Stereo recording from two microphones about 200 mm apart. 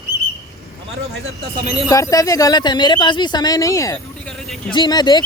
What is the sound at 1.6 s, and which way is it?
Speech, 35° right (ahead or behind).